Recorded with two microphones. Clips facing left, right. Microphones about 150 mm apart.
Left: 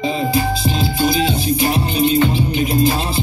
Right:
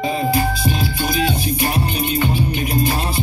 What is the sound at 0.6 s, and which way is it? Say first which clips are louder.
Music: left 3 dB; 25° left (ahead or behind).